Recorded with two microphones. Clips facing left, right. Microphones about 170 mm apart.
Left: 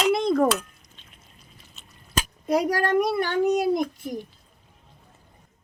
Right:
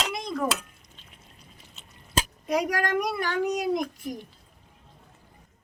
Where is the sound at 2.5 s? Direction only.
35° left (ahead or behind).